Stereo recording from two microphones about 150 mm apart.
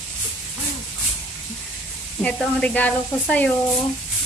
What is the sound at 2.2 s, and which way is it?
Speech, 10° left (ahead or behind).